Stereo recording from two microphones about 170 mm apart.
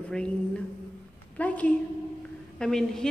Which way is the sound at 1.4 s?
10° left (ahead or behind).